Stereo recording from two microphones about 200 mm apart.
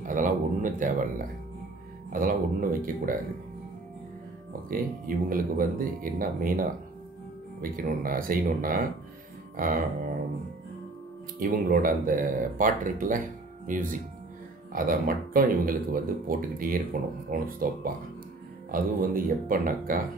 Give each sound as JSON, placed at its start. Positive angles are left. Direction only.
{"t": 0.0, "sound": "speech", "side_deg": -40}
{"t": 4.5, "sound": "speech", "side_deg": -45}
{"t": 11.3, "sound": "speech", "side_deg": -45}
{"t": 18.7, "sound": "speech", "side_deg": -45}